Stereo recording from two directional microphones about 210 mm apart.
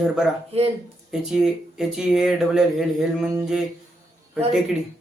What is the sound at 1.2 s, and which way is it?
Speech, centre (ahead or behind).